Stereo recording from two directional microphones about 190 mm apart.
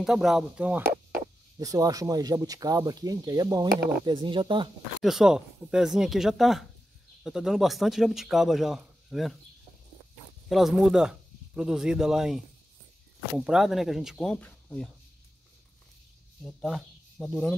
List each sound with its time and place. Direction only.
0.0 s speech: centre (ahead or behind); by 4.6 s 25° right (ahead or behind)
5.0 s speech: 5° right (ahead or behind)
10.5 s speech: centre (ahead or behind)
13.4 s speech: centre (ahead or behind)
16.4 s speech: centre (ahead or behind)